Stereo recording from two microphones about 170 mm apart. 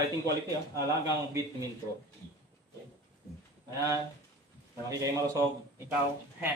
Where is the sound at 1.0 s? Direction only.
20° right (ahead or behind).